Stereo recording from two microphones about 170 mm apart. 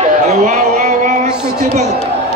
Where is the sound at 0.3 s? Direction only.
45° right (ahead or behind).